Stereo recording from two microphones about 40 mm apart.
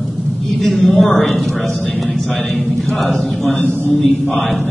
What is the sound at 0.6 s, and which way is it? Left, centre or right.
Speech, centre.